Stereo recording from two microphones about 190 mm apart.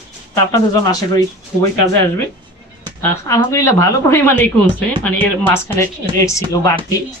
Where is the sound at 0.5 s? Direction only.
20° left (ahead or behind).